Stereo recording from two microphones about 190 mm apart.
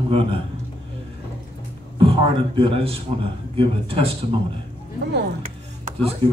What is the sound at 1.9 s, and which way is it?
A man's voice, 25° right (ahead or behind).